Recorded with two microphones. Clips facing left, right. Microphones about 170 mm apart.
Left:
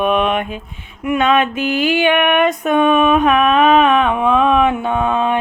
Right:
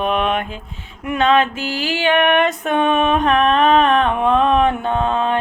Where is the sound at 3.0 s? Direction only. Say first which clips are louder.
Left 3 dB; 10° left (ahead or behind).